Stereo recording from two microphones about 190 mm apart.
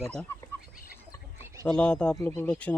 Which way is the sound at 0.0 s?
5° left (ahead or behind).